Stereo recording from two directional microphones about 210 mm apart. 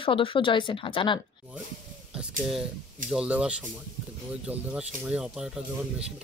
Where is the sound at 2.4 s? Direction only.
Centre (ahead or behind).